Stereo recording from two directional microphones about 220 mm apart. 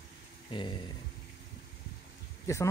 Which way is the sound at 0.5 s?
20° left (ahead or behind).